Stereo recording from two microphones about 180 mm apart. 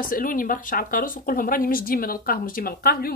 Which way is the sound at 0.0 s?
50° left (ahead or behind).